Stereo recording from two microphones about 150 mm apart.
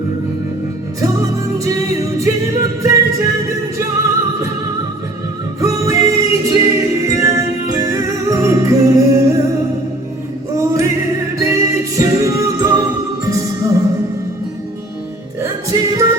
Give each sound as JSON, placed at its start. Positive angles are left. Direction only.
{"t": 2.1, "sound": "music", "side_deg": -20}
{"t": 5.5, "sound": "music", "side_deg": -20}
{"t": 15.4, "sound": "music", "side_deg": -20}